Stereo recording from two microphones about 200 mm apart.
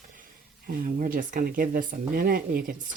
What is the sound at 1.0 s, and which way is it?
Speech, 45° right (ahead or behind).